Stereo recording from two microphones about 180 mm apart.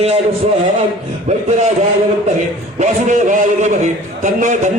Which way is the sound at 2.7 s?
45° right (ahead or behind).